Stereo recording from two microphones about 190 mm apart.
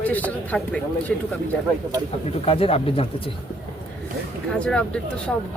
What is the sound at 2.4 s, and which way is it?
Speech, 30° left (ahead or behind).